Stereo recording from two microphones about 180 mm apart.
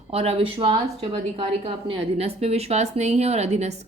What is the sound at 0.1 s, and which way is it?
A woman's voice, 30° right (ahead or behind).